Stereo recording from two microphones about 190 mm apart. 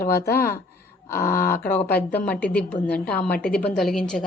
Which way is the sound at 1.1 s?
15° left (ahead or behind).